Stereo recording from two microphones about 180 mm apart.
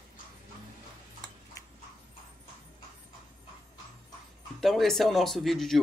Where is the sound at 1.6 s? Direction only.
20° left (ahead or behind).